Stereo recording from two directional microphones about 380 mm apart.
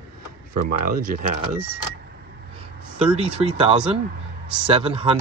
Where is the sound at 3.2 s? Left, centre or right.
Centre.